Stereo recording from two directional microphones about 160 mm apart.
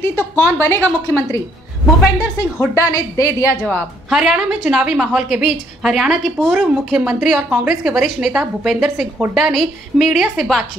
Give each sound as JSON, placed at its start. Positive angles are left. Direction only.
{"t": 0.4, "sound": "a woman's voice", "side_deg": 15}
{"t": 3.6, "sound": "a woman's voice", "side_deg": 0}